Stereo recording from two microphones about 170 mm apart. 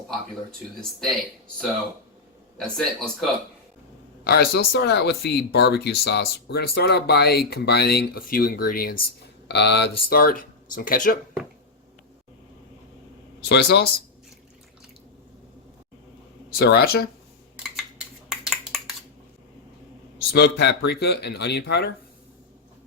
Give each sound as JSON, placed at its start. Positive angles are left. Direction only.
{"t": 0.8, "sound": "speech", "side_deg": 0}
{"t": 2.6, "sound": "speech", "side_deg": 0}
{"t": 4.2, "sound": "speech", "side_deg": 70}
{"t": 10.1, "sound": "speech", "side_deg": 55}
{"t": 13.4, "sound": "speech", "side_deg": 75}
{"t": 16.5, "sound": "speech", "side_deg": 65}
{"t": 18.3, "sound": "a sound", "side_deg": 0}
{"t": 20.3, "sound": "speech", "side_deg": 75}